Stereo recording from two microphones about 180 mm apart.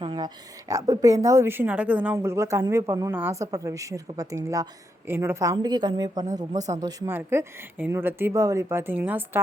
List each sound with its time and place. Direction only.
0.0 s a woman's voice: 25° right (ahead or behind)